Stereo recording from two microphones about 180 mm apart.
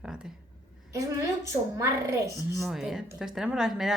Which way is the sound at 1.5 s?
15° right (ahead or behind).